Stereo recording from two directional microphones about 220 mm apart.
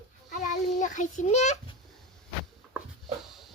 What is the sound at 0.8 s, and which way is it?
Speech, 35° left (ahead or behind).